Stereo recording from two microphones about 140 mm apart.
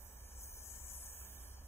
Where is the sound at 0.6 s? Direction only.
15° left (ahead or behind).